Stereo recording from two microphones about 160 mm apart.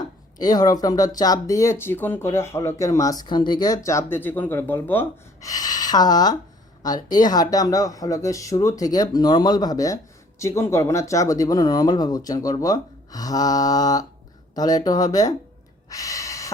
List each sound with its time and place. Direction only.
0.3 s speech: 25° left (ahead or behind)
3.8 s speech: 15° left (ahead or behind)
15.9 s gasp: 20° left (ahead or behind)